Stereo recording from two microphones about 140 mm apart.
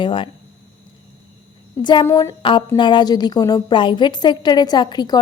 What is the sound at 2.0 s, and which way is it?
Speech, 20° left (ahead or behind).